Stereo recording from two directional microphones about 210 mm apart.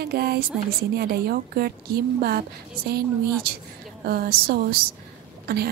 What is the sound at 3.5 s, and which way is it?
A woman's voice, 45° right (ahead or behind).